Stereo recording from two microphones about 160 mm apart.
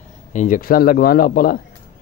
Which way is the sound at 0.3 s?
55° left (ahead or behind).